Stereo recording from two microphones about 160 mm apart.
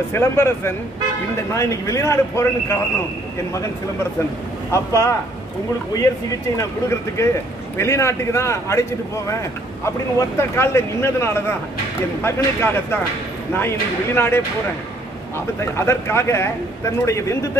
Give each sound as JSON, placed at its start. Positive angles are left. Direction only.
{"t": 0.1, "sound": "a man's voice", "side_deg": 15}
{"t": 4.6, "sound": "a man's voice", "side_deg": 20}
{"t": 6.5, "sound": "a man's voice", "side_deg": 20}